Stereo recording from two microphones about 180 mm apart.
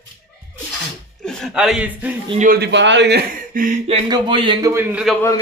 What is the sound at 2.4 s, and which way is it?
Speech, 60° right (ahead or behind).